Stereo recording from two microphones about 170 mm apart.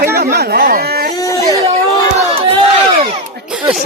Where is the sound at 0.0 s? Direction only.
65° right (ahead or behind).